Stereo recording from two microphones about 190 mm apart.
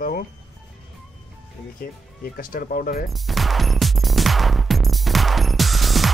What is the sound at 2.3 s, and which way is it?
Speech, 50° left (ahead or behind).